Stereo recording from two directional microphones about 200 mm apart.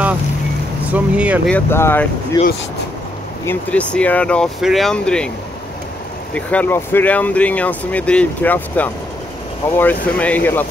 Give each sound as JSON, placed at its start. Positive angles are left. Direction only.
{"t": 0.8, "sound": "speech", "side_deg": -5}
{"t": 1.5, "sound": "speech", "side_deg": 10}
{"t": 2.4, "sound": "speech", "side_deg": 25}
{"t": 3.4, "sound": "speech", "side_deg": 5}
{"t": 6.3, "sound": "speech", "side_deg": 5}